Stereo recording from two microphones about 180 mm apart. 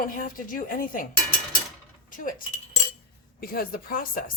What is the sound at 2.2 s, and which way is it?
Speech, 50° left (ahead or behind).